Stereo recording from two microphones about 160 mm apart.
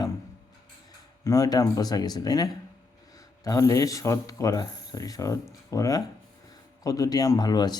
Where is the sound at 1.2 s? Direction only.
20° left (ahead or behind).